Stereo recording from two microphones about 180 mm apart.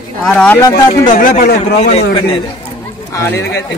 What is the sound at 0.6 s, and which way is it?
Speech, 20° left (ahead or behind).